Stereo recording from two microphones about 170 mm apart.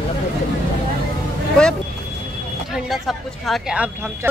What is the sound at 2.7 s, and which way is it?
Speech, centre (ahead or behind).